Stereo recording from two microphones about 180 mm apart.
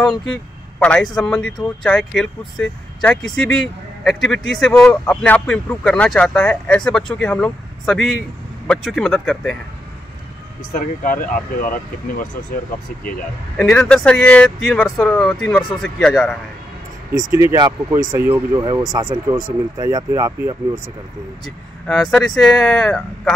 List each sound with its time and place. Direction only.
0.0 s speech: 5° left (ahead or behind)
10.7 s speech: 50° left (ahead or behind)
13.6 s speech: 5° left (ahead or behind)
17.1 s speech: 15° right (ahead or behind)
21.8 s speech: 5° left (ahead or behind)